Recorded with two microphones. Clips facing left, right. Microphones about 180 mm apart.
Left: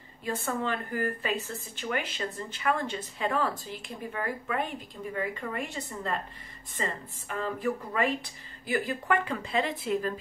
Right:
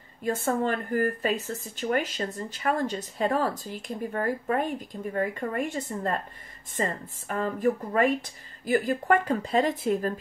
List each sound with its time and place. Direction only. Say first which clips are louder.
0.2 s speech: right 5 dB; 45° right (ahead or behind)